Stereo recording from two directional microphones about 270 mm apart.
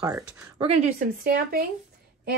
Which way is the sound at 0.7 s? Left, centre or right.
Right.